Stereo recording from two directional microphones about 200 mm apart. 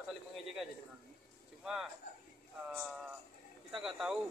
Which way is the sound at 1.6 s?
Centre (ahead or behind).